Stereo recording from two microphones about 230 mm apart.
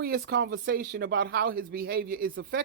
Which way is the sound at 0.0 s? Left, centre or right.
Right.